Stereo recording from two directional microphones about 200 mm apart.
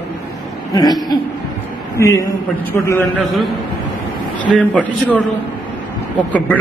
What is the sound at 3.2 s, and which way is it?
Speech, centre (ahead or behind).